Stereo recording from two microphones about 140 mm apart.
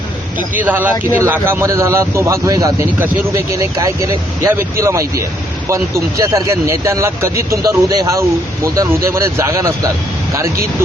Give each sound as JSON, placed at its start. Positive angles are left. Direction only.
{"t": 0.5, "sound": "a man's voice", "side_deg": -10}